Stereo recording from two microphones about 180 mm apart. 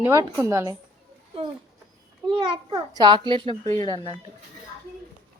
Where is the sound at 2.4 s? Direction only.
25° right (ahead or behind).